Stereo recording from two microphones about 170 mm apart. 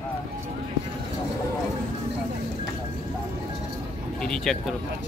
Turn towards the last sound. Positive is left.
turn(degrees=5)  # may be behind; listen again after turning